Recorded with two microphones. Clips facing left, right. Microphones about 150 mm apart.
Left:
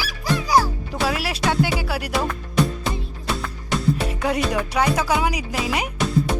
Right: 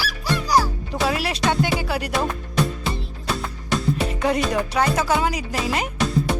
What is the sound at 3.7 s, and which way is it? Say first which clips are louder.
Music: left 1 dB; 5° left (ahead or behind).